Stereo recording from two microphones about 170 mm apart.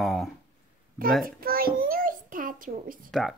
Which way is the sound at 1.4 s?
60° right (ahead or behind).